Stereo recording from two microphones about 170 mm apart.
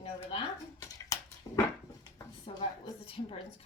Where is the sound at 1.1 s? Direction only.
20° left (ahead or behind).